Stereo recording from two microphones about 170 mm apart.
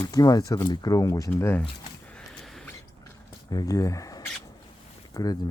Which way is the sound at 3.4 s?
20° left (ahead or behind).